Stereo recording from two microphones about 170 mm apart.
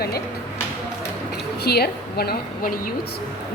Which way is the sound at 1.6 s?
70° left (ahead or behind).